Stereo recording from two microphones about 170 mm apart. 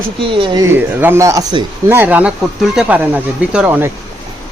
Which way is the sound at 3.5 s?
10° right (ahead or behind).